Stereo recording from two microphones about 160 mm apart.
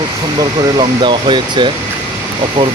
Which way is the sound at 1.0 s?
30° right (ahead or behind).